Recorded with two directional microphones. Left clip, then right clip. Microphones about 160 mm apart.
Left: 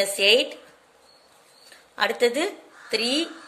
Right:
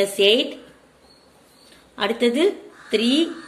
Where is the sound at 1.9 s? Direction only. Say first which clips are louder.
Right 1 dB; 45° left (ahead or behind).